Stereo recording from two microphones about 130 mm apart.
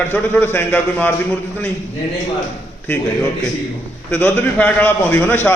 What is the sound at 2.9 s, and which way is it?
Speech, 15° left (ahead or behind).